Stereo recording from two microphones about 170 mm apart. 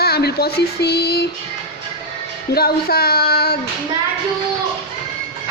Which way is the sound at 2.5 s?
65° left (ahead or behind).